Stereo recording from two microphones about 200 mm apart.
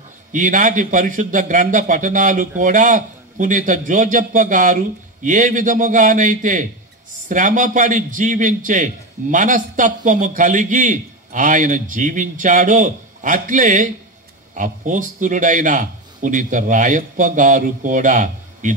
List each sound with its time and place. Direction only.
0.3 s a man's voice: 40° right (ahead or behind)